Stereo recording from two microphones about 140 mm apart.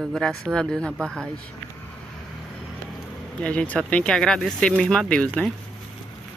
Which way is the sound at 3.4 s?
10° left (ahead or behind).